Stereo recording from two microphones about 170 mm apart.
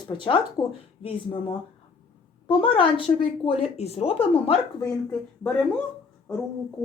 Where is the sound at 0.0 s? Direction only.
30° left (ahead or behind).